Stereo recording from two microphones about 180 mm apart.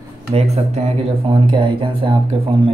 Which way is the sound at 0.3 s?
35° right (ahead or behind).